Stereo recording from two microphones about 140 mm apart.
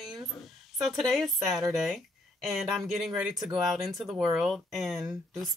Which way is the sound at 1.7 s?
Centre (ahead or behind).